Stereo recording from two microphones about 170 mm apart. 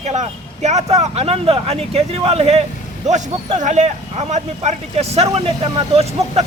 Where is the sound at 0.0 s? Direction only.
40° right (ahead or behind).